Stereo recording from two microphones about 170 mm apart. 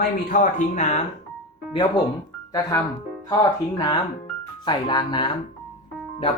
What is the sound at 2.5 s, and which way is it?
Speech, 20° left (ahead or behind).